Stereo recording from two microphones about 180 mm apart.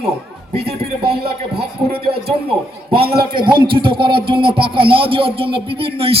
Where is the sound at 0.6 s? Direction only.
60° right (ahead or behind).